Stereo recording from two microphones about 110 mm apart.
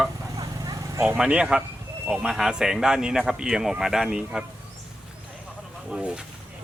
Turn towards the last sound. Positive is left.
turn(degrees=-5)  # may be behind; listen again after turning